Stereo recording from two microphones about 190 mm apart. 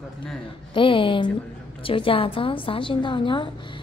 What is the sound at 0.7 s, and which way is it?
A woman's voice, 25° left (ahead or behind).